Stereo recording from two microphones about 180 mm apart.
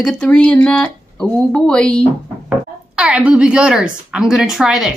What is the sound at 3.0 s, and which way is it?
A woman's voice, 5° right (ahead or behind).